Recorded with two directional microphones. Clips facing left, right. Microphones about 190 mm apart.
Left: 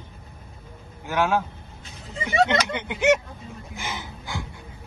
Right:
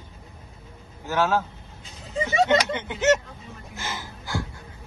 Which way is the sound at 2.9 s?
10° left (ahead or behind).